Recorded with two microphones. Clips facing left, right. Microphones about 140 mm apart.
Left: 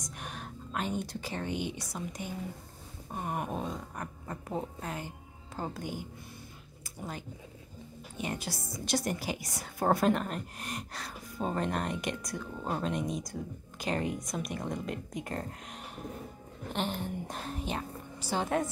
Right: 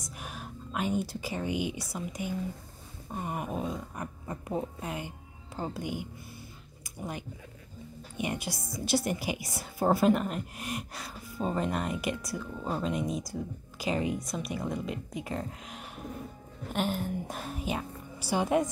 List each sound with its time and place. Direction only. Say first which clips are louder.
0.0 s a woman's voice: even; 5° right (ahead or behind)
6.8 s a sound: right 3 dB; 15° right (ahead or behind)
8.2 s a woman's voice: right 3 dB; 15° right (ahead or behind)